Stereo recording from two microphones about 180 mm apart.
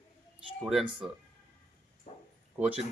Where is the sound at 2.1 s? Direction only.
45° left (ahead or behind).